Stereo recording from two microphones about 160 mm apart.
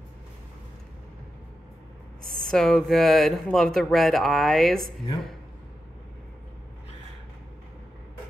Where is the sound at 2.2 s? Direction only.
65° right (ahead or behind).